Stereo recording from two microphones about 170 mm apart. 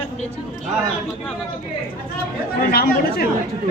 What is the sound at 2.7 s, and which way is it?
Speech, 65° left (ahead or behind).